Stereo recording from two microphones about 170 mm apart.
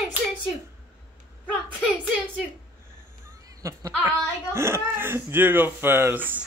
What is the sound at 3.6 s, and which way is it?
Speech, 20° right (ahead or behind).